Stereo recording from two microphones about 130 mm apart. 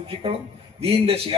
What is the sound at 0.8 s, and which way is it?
Speech, 45° right (ahead or behind).